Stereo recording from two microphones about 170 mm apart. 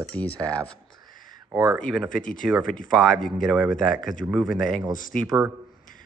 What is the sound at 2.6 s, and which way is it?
Speech, 55° left (ahead or behind).